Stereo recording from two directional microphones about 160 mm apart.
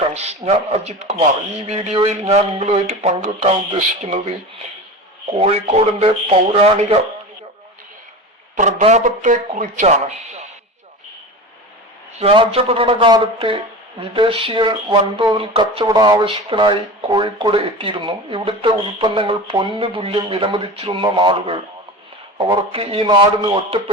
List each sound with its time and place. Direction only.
0.1 s speech: 40° right (ahead or behind)
5.4 s speech: 45° right (ahead or behind)
8.5 s speech: 50° right (ahead or behind)
12.2 s speech: 35° right (ahead or behind)